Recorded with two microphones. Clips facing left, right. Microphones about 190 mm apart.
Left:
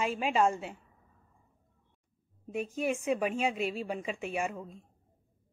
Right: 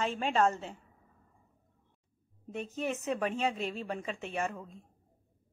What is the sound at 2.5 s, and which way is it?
A woman's voice, 10° left (ahead or behind).